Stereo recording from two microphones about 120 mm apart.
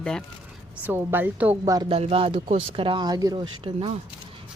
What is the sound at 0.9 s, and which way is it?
Speech, 15° right (ahead or behind).